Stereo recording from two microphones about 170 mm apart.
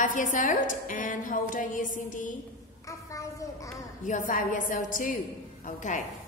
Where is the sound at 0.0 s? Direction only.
50° left (ahead or behind).